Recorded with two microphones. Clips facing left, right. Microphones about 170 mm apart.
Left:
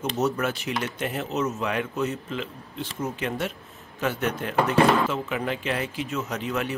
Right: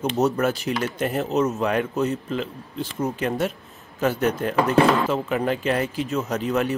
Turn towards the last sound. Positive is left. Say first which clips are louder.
# right 5 dB
turn(degrees=-40)  # may be behind; listen again after turning